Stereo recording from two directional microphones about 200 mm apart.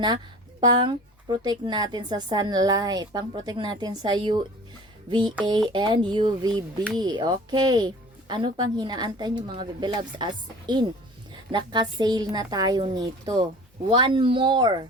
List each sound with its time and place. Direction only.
0.6 s speech: 20° right (ahead or behind)